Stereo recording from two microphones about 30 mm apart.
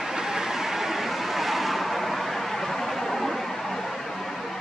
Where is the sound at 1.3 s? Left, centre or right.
Centre.